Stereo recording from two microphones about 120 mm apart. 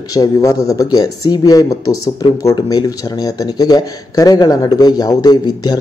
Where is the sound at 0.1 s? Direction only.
30° left (ahead or behind).